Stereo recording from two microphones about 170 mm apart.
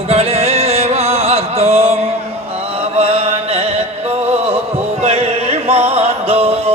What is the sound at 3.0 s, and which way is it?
Chant, 35° right (ahead or behind).